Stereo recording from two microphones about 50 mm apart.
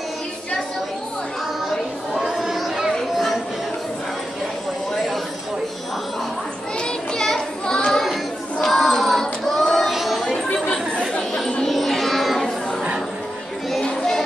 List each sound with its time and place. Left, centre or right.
2.1 s chatter: centre
2.9 s a sound: centre
6.8 s children playing: centre
8.6 s child singing: centre
10.2 s chatter: centre
11.6 s music: centre
13.8 s a sound: centre